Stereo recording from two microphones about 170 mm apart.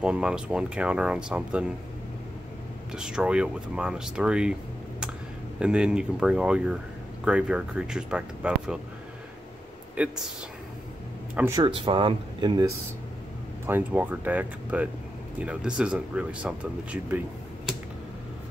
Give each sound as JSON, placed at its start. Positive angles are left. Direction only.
{"t": 0.0, "sound": "speech", "side_deg": -5}
{"t": 2.9, "sound": "speech", "side_deg": -5}
{"t": 5.6, "sound": "speech", "side_deg": -5}
{"t": 9.9, "sound": "speech", "side_deg": -5}
{"t": 11.3, "sound": "speech", "side_deg": -15}
{"t": 11.6, "sound": "speech", "side_deg": -30}
{"t": 13.7, "sound": "speech", "side_deg": -10}